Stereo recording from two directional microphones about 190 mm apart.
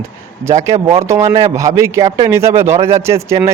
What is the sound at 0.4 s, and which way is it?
Speech, 15° right (ahead or behind).